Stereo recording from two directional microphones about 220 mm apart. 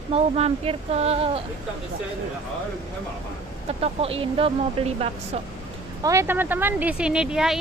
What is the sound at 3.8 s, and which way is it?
Speech, 25° right (ahead or behind).